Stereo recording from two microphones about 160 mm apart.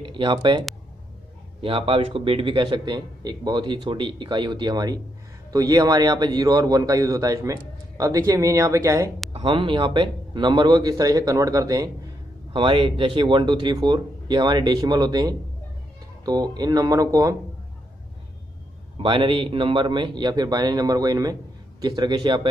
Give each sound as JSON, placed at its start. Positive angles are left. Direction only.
{"t": 0.0, "sound": "speech", "side_deg": -30}
{"t": 9.3, "sound": "speech", "side_deg": -30}
{"t": 19.0, "sound": "speech", "side_deg": -30}